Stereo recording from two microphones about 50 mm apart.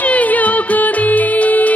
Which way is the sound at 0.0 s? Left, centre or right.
Left.